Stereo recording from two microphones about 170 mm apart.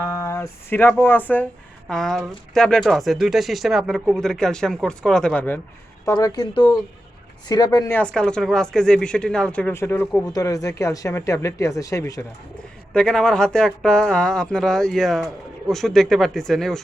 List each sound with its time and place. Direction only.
0.0 s speech: 15° left (ahead or behind)
6.1 s speech: 20° left (ahead or behind)
7.9 s speech: 5° left (ahead or behind)
12.9 s speech: 5° left (ahead or behind)